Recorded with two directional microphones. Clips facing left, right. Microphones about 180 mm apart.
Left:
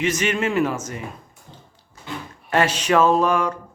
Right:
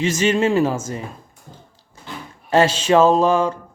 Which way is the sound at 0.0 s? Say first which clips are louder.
Right 4 dB; 25° right (ahead or behind).